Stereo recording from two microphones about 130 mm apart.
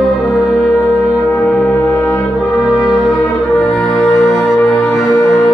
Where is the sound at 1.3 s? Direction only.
10° left (ahead or behind).